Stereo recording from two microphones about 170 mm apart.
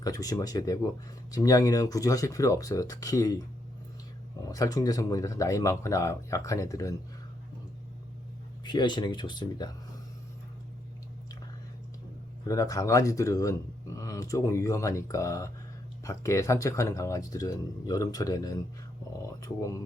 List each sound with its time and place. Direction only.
0.0 s speech: 20° left (ahead or behind)
4.4 s speech: 20° left (ahead or behind)
8.6 s speech: 25° left (ahead or behind)
12.5 s speech: 20° left (ahead or behind)